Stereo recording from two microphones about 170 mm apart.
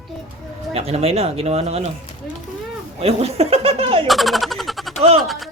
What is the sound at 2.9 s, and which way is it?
Speech, 35° right (ahead or behind).